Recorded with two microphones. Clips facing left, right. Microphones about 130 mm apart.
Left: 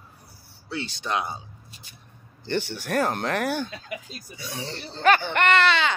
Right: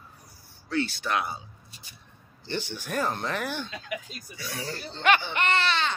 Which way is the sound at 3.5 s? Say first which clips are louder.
Left 5 dB; 45° left (ahead or behind).